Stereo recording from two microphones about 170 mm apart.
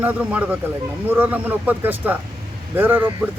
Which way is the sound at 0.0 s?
10° right (ahead or behind).